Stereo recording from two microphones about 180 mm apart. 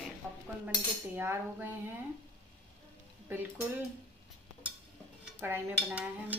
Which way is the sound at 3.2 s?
10° right (ahead or behind).